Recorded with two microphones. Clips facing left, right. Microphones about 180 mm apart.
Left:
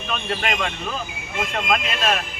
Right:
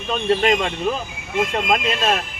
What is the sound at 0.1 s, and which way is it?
Speech, 30° right (ahead or behind).